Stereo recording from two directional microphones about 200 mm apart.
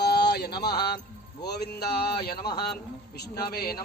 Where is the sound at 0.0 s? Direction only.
55° left (ahead or behind).